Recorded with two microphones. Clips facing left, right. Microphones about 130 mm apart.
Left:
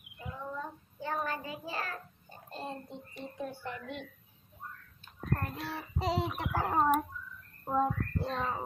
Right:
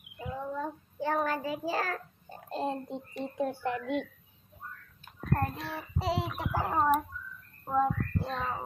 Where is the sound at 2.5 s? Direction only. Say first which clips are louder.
Right 8 dB; 50° right (ahead or behind).